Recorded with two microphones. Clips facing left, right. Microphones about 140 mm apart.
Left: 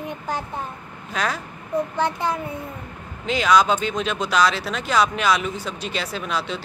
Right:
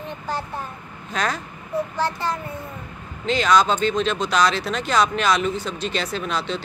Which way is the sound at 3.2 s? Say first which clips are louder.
Even; 10° left (ahead or behind).